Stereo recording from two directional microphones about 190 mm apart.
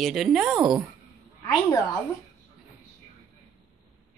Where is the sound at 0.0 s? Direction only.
Centre (ahead or behind).